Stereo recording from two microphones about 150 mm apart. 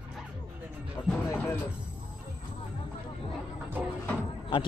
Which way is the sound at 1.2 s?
15° left (ahead or behind).